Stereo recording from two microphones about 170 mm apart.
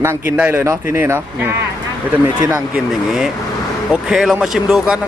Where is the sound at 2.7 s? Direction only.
Centre (ahead or behind).